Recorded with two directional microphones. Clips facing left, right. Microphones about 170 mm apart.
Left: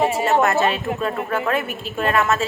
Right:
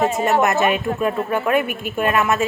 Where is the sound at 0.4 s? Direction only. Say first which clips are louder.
Right 1 dB; 15° right (ahead or behind).